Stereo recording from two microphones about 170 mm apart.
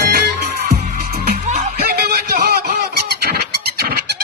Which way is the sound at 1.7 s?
65° right (ahead or behind).